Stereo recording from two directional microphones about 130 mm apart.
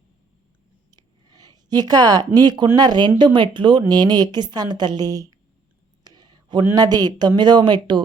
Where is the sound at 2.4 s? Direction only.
35° right (ahead or behind).